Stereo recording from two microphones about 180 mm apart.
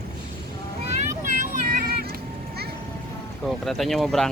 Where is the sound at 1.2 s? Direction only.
45° right (ahead or behind).